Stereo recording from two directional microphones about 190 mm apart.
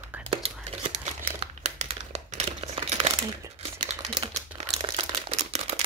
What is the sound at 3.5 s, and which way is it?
Typewriter, 30° right (ahead or behind).